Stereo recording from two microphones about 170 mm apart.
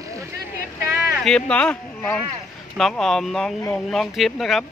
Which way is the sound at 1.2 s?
5° left (ahead or behind).